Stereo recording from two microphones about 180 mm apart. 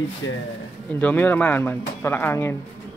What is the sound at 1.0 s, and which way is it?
Speech, 10° left (ahead or behind).